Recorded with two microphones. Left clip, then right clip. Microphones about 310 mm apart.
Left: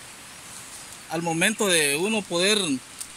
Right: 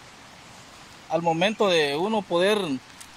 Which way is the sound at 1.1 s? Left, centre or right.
Centre.